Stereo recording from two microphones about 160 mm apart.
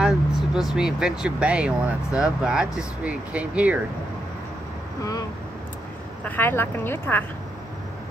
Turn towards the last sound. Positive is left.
turn(degrees=15)  # may be behind; listen again after turning